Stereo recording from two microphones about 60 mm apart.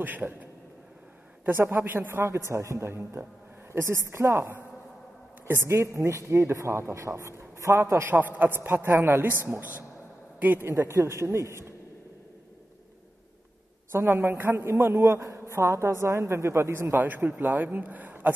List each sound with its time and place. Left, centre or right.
0.0 s a man's voice: right
1.5 s a woman's voice: right
8.1 s a man's voice: right
10.7 s a woman's voice: right
13.9 s a man's voice: right
16.9 s a man's voice: right